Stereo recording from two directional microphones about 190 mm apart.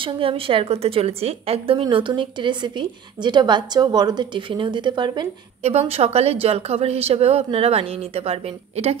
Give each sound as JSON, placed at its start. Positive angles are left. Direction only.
{"t": 0.0, "sound": "a woman's voice", "side_deg": -30}